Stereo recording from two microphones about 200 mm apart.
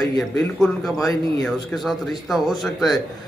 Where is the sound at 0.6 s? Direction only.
Centre (ahead or behind).